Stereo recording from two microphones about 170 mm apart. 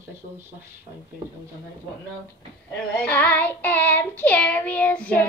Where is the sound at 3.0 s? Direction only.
10° left (ahead or behind).